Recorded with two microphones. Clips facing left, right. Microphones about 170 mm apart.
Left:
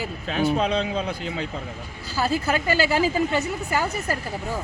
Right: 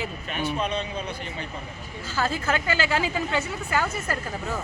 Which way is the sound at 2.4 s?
40° left (ahead or behind).